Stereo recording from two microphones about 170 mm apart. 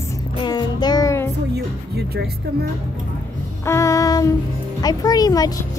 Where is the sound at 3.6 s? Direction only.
15° left (ahead or behind).